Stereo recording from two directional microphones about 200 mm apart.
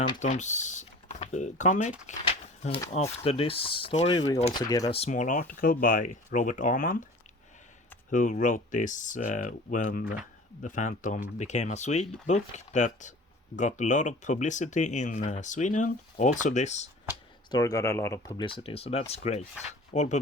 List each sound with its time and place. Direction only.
0.2 s speech: 35° left (ahead or behind)
2.0 s a sound: 30° left (ahead or behind)
2.9 s speech: 30° left (ahead or behind)
4.5 s speech: 20° left (ahead or behind)
4.9 s speech: 35° left (ahead or behind)
8.1 s speech: 40° left (ahead or behind)
17.5 s speech: 15° left (ahead or behind)
18.3 s speech: 25° left (ahead or behind)